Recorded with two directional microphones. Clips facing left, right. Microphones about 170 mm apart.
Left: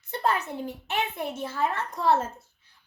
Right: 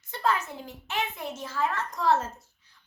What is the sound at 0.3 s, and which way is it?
A child's voice, 60° left (ahead or behind).